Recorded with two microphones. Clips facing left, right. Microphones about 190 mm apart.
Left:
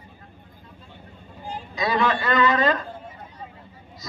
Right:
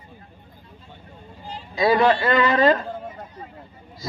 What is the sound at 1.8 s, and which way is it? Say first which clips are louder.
A man's voice: right 6 dB; 30° right (ahead or behind).